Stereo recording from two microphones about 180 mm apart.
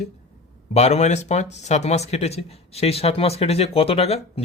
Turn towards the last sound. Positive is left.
turn(degrees=35)  # may be behind; listen again after turning